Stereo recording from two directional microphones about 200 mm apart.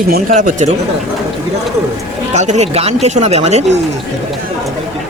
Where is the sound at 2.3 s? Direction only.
35° right (ahead or behind).